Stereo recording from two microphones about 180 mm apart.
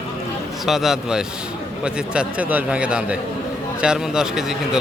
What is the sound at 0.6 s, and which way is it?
Speech, centre (ahead or behind).